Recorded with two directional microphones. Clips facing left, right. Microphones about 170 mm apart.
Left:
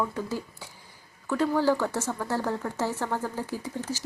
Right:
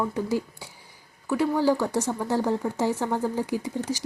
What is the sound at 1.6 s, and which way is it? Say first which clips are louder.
Speech: right 2 dB; 15° right (ahead or behind).